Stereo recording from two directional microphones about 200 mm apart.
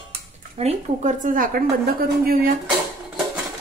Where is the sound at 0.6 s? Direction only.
35° right (ahead or behind).